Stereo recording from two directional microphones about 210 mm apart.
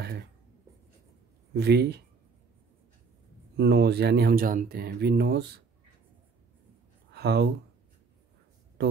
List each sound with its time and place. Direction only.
1.5 s speech: 50° right (ahead or behind)
3.5 s speech: 50° right (ahead or behind)
7.2 s speech: 50° right (ahead or behind)